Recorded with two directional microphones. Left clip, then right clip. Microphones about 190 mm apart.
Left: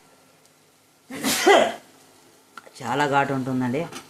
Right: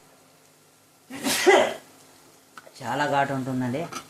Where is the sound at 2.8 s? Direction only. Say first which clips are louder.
Left 2 dB; 25° left (ahead or behind).